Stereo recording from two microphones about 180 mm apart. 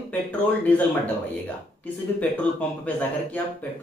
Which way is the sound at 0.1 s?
10° left (ahead or behind).